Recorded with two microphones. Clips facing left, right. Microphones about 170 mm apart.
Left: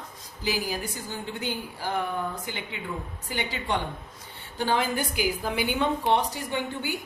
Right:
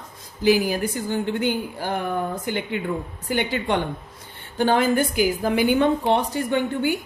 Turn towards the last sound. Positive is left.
turn(degrees=-55)  # may be behind; listen again after turning